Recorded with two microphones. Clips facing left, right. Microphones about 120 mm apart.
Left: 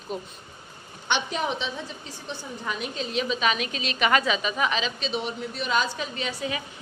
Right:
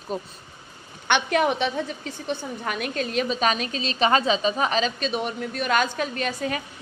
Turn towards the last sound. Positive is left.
turn(degrees=-50)  # may be behind; listen again after turning